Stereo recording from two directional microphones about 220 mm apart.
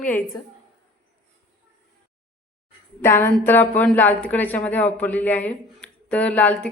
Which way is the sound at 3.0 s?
10° left (ahead or behind).